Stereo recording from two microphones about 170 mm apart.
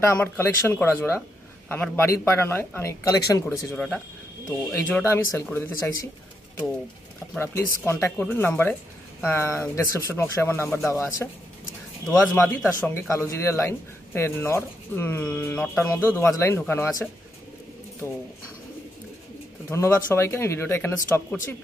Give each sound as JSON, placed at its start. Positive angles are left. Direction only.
{"t": 0.0, "sound": "a man's voice", "side_deg": 15}
{"t": 3.7, "sound": "a man's voice", "side_deg": 5}
{"t": 7.3, "sound": "a man's voice", "side_deg": 15}
{"t": 19.7, "sound": "a man's voice", "side_deg": 15}